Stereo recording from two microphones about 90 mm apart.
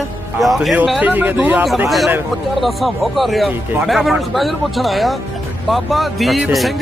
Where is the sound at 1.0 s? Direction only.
20° right (ahead or behind).